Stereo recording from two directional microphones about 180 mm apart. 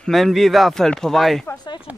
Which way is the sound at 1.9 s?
10° right (ahead or behind).